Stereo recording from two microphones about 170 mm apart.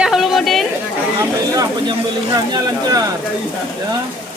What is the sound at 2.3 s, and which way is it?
Speech, 20° right (ahead or behind).